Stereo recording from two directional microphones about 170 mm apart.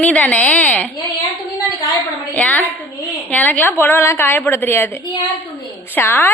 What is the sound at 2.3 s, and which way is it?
A woman's voice, 10° left (ahead or behind).